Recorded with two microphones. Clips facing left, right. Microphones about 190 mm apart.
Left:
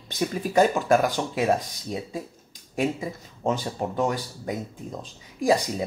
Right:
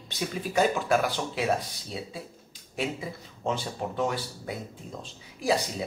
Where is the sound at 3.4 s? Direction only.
45° left (ahead or behind).